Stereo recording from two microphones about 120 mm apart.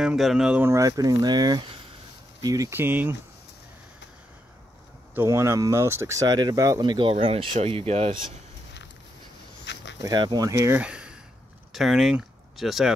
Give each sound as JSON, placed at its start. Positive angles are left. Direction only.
{"t": 0.0, "sound": "speech", "side_deg": -5}
{"t": 0.7, "sound": "speech", "side_deg": -30}
{"t": 2.7, "sound": "speech", "side_deg": -15}
{"t": 5.1, "sound": "speech", "side_deg": -25}
{"t": 6.8, "sound": "speech", "side_deg": -40}
{"t": 10.1, "sound": "speech", "side_deg": -35}
{"t": 10.7, "sound": "speech", "side_deg": -10}